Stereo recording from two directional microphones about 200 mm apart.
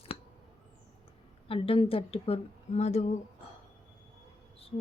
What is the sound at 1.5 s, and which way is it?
A woman's voice, 30° left (ahead or behind).